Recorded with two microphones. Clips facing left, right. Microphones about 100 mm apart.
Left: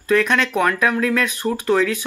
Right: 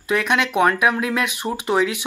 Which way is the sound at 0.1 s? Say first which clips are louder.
Left 2 dB; 15° right (ahead or behind).